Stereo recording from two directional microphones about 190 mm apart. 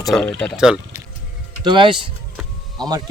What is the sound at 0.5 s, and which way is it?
Speech, 5° right (ahead or behind).